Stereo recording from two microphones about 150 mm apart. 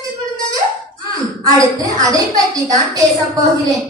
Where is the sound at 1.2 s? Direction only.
20° right (ahead or behind).